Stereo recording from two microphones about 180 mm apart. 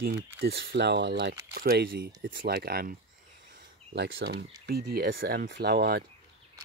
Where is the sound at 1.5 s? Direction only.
60° right (ahead or behind).